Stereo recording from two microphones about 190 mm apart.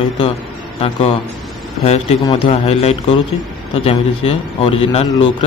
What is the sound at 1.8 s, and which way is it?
A man's voice, 35° left (ahead or behind).